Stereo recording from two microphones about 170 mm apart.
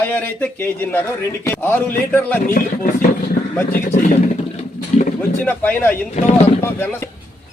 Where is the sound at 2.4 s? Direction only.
55° left (ahead or behind).